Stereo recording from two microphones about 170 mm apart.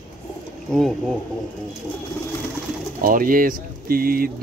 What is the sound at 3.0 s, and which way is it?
Speech, 55° right (ahead or behind).